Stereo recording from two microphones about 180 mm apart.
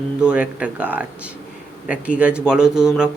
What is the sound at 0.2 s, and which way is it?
A man's voice, 5° right (ahead or behind).